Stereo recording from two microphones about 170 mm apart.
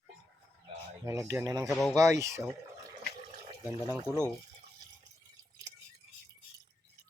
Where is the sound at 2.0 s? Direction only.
20° right (ahead or behind).